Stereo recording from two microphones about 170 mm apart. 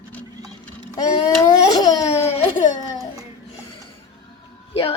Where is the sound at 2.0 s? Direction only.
40° left (ahead or behind).